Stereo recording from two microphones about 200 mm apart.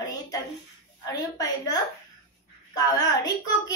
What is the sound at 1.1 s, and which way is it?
Speech, 20° left (ahead or behind).